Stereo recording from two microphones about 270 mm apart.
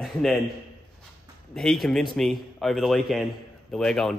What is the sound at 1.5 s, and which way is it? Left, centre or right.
A man's voice, centre.